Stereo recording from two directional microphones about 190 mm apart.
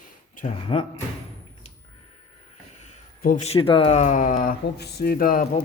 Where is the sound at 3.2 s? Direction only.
35° left (ahead or behind).